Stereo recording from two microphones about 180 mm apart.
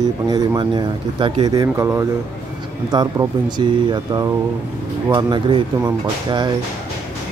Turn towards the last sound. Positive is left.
turn(degrees=-25)  # may be behind; listen again after turning